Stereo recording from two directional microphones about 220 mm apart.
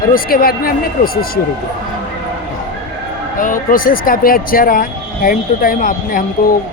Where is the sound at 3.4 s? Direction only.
35° left (ahead or behind).